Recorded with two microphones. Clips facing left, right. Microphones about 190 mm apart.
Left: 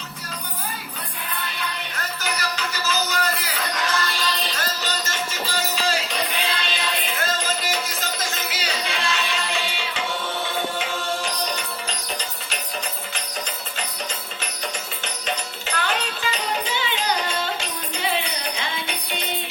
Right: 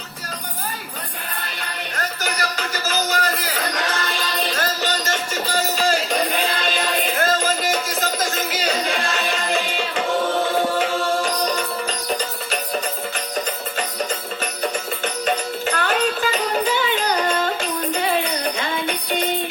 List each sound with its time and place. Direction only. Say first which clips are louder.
1.4 s music: left 1 dB; 45° right (ahead or behind)
15.6 s music: right 5 dB; 45° right (ahead or behind)